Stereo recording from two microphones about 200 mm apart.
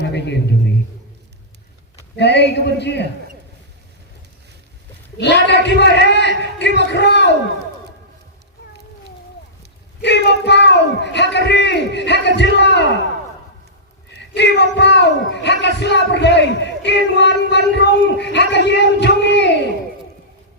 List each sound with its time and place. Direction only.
0.0 s a man's voice: 60° left (ahead or behind)
2.1 s speech: 60° left (ahead or behind)
5.1 s speech: 60° left (ahead or behind)
10.0 s speech: 60° left (ahead or behind)
14.3 s speech: 60° left (ahead or behind)